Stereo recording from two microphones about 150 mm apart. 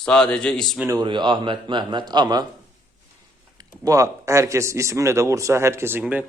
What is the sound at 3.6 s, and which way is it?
A man's voice, 25° right (ahead or behind).